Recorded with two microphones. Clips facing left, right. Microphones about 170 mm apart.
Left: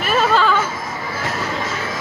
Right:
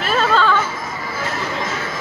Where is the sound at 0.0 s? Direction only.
10° left (ahead or behind).